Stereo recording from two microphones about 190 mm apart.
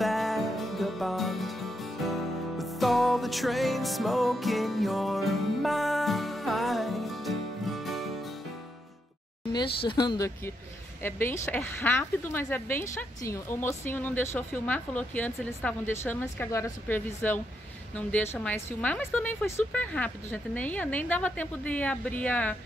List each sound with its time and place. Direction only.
0.0 s music: centre (ahead or behind)
9.5 s speech: 25° left (ahead or behind); by 22.6 s 5° left (ahead or behind)